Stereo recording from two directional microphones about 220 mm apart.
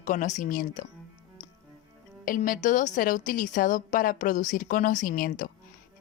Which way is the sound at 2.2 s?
40° left (ahead or behind).